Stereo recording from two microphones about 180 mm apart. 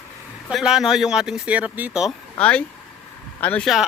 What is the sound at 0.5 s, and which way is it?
Speech, 5° right (ahead or behind).